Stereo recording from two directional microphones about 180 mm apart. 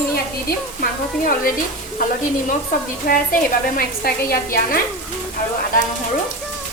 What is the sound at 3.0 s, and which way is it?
A woman's voice, 50° left (ahead or behind).